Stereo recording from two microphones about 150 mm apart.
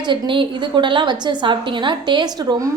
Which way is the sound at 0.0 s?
30° right (ahead or behind).